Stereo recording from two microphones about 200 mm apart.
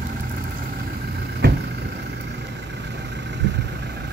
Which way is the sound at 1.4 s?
55° right (ahead or behind).